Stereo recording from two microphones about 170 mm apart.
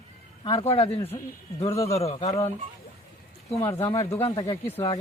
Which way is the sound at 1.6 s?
20° left (ahead or behind).